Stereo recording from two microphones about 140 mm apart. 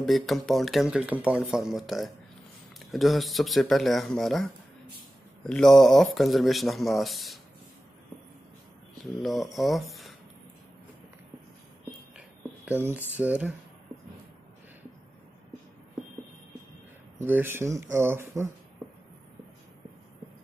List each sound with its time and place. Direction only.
0.0 s speech: centre (ahead or behind)
9.2 s speech: centre (ahead or behind)
12.2 s a sound: 10° right (ahead or behind)
13.1 s speech: 10° right (ahead or behind)
17.2 s speech: 15° right (ahead or behind)